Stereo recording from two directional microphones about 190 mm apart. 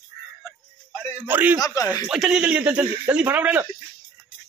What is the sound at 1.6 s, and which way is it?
Speech, 15° left (ahead or behind).